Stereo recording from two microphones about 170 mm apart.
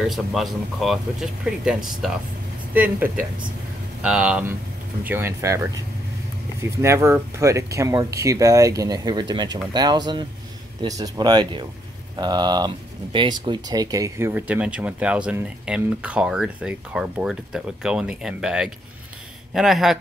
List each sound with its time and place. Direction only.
0.0 s speech: centre (ahead or behind)